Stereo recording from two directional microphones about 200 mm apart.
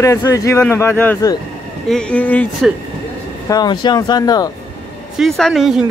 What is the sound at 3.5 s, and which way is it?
Speech, 20° left (ahead or behind).